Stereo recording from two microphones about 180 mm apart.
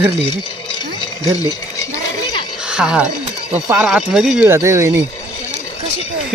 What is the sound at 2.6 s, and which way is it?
Speech, 5° right (ahead or behind).